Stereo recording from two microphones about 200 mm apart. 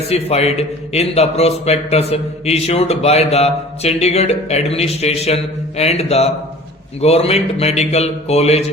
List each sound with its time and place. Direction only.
0.1 s a man's voice: 30° left (ahead or behind)